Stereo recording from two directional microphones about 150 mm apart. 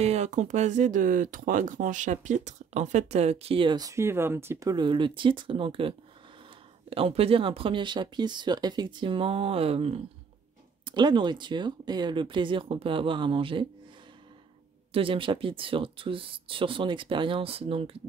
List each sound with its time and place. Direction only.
0.0 s speech: 50° right (ahead or behind)
14.9 s speech: 35° right (ahead or behind)